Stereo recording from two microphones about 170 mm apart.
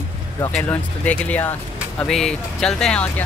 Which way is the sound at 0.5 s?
5° left (ahead or behind).